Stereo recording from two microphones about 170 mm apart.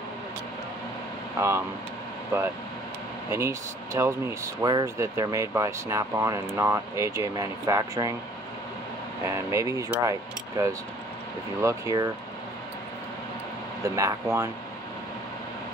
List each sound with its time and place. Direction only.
3.3 s speech: 15° right (ahead or behind)
9.2 s speech: 15° right (ahead or behind)
13.8 s speech: 20° right (ahead or behind)